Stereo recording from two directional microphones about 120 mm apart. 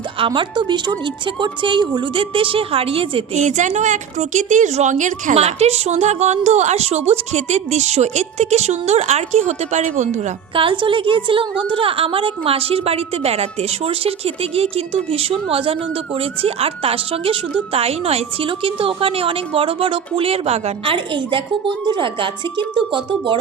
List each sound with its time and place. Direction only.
0.2 s a woman's voice: 40° right (ahead or behind)
3.3 s a woman's voice: 75° right (ahead or behind)
10.5 s a woman's voice: 45° right (ahead or behind)